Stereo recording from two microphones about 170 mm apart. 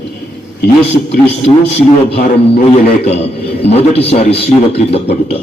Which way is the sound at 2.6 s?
40° left (ahead or behind).